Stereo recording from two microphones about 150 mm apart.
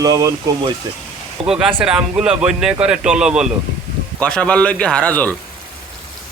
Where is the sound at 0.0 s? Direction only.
25° right (ahead or behind).